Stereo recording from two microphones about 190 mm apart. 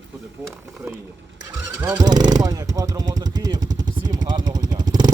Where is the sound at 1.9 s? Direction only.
20° right (ahead or behind).